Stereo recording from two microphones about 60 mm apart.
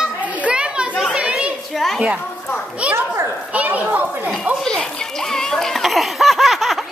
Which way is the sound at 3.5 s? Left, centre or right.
Right.